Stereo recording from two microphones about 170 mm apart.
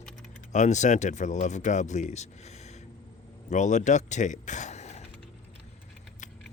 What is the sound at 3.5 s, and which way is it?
Speech, 45° left (ahead or behind).